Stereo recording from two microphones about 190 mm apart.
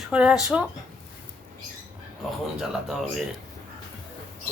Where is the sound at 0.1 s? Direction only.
5° right (ahead or behind).